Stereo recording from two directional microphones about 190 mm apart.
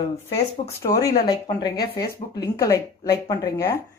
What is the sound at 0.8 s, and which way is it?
Speech, 20° left (ahead or behind).